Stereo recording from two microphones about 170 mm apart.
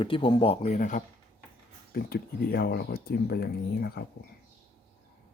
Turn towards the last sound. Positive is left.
turn(degrees=65)  # may be behind; listen again after turning